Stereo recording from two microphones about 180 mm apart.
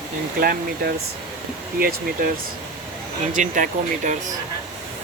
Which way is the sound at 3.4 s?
45° right (ahead or behind).